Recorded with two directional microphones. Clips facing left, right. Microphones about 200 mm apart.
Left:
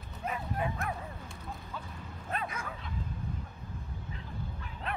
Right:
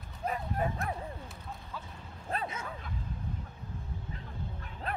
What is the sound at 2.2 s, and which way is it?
Bow-wow, 30° right (ahead or behind).